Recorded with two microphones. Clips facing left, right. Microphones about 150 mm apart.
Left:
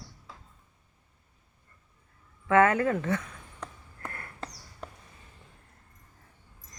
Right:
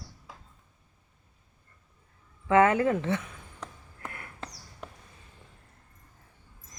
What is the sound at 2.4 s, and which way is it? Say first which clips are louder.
Speech: right 1 dB; 20° right (ahead or behind).